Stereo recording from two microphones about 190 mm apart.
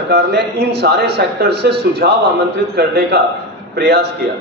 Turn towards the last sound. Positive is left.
turn(degrees=-60)  # may be behind; listen again after turning